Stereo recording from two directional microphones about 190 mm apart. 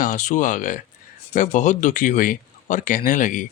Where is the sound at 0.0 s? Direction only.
40° left (ahead or behind).